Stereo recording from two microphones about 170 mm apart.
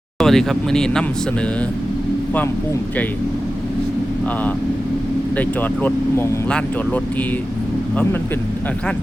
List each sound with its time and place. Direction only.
0.2 s speech: centre (ahead or behind)
5.4 s speech: 10° left (ahead or behind)